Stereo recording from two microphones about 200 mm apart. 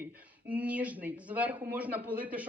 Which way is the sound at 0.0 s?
5° right (ahead or behind).